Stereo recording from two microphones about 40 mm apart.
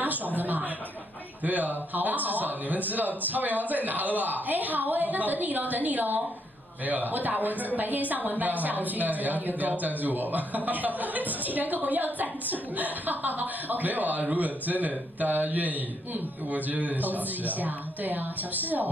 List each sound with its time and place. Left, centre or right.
0.4 s chuckle: right
1.4 s a woman's voice: right